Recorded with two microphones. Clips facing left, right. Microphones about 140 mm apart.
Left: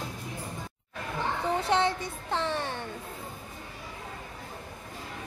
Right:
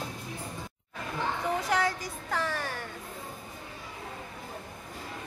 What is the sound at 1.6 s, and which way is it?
Speech, 25° left (ahead or behind).